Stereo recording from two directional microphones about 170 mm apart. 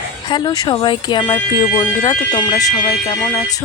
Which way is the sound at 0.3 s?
25° left (ahead or behind).